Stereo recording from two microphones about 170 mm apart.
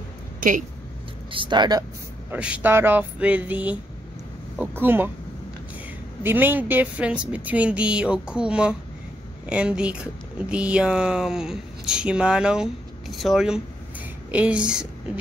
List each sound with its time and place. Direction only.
1.3 s speech: 30° right (ahead or behind)
2.3 s a woman's voice: 5° right (ahead or behind)
6.2 s a woman's voice: 10° right (ahead or behind)